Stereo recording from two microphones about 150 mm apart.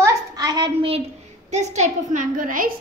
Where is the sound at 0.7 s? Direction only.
40° right (ahead or behind).